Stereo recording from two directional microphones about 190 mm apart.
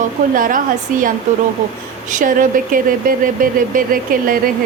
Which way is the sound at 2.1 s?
45° right (ahead or behind).